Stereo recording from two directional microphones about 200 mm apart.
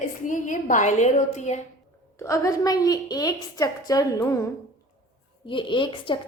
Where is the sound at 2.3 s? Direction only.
15° left (ahead or behind).